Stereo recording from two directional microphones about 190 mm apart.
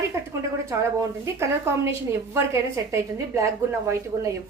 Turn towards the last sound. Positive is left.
turn(degrees=-15)  # may be behind; listen again after turning